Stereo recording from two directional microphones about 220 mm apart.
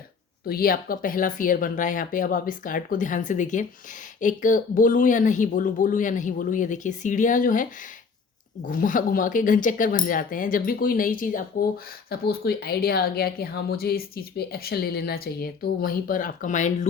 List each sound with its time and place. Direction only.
0.4 s a woman's voice: 40° left (ahead or behind)